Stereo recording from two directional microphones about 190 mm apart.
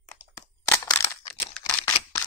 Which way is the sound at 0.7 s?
15° left (ahead or behind).